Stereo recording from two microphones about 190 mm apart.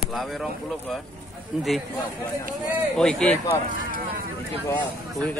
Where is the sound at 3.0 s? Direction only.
5° left (ahead or behind).